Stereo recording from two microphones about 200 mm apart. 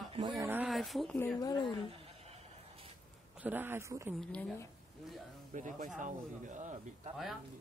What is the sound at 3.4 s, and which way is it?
Speech, 10° right (ahead or behind).